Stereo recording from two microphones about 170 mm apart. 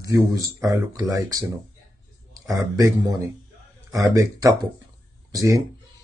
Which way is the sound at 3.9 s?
20° right (ahead or behind).